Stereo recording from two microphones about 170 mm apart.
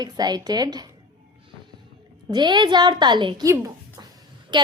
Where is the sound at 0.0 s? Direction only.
25° right (ahead or behind).